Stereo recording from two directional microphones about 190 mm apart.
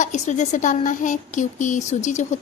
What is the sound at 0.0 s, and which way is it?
Speech, 40° left (ahead or behind).